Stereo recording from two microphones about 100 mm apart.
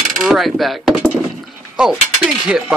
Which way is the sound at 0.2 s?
Centre (ahead or behind).